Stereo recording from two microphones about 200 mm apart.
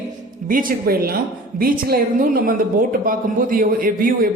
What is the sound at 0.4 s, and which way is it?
Speech, 45° right (ahead or behind).